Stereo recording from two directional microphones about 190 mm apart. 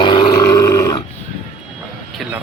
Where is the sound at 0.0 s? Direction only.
25° left (ahead or behind).